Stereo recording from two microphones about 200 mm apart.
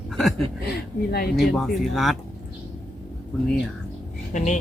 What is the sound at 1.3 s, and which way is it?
Speech, centre (ahead or behind).